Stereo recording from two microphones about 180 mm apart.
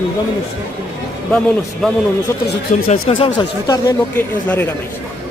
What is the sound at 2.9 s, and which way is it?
Speech, 30° left (ahead or behind).